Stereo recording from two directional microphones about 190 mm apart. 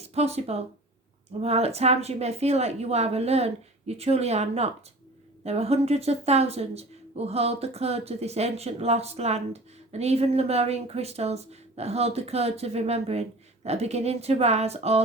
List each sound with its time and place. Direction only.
0.0 s speech: 35° right (ahead or behind)